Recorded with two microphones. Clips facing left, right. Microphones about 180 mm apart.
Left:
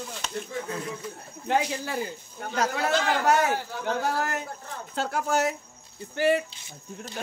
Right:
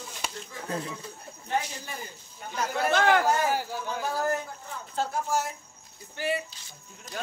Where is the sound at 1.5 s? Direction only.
80° left.